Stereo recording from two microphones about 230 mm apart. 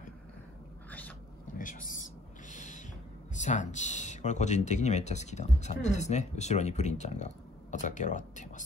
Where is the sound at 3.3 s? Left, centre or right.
Left.